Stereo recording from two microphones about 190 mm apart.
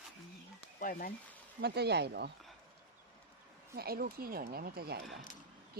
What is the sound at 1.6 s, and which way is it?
Speech, 60° right (ahead or behind).